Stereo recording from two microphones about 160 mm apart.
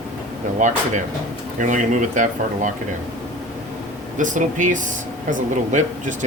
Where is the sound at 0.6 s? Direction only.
50° right (ahead or behind).